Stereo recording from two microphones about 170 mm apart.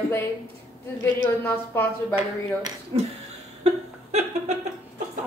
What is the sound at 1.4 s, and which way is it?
Speech, 15° left (ahead or behind).